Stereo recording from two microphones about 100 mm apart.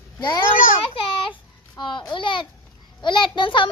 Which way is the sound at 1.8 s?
50° left (ahead or behind).